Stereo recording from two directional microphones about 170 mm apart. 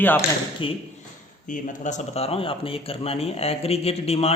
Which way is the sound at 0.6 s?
30° left (ahead or behind).